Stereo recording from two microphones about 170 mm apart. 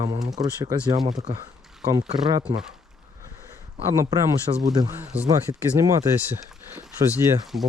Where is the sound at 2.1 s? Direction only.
30° right (ahead or behind).